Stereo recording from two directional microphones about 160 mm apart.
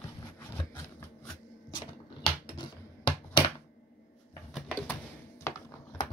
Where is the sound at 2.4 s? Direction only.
30° left (ahead or behind).